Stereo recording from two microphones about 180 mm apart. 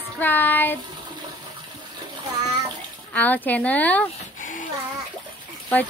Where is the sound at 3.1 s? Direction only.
10° left (ahead or behind).